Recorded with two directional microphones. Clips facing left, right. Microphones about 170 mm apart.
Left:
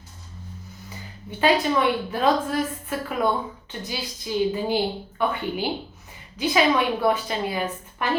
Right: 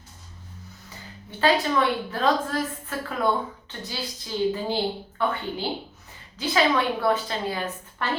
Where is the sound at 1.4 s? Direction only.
15° left (ahead or behind).